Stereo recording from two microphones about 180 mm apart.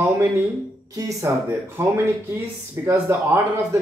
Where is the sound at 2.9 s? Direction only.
15° right (ahead or behind).